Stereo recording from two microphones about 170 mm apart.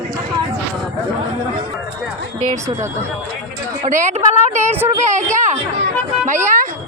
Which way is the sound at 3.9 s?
45° right (ahead or behind).